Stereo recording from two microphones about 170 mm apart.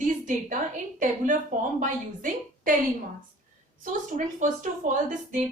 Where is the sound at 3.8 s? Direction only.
50° right (ahead or behind).